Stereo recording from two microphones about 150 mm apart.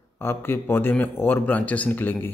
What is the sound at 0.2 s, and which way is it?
A man's voice, 15° left (ahead or behind).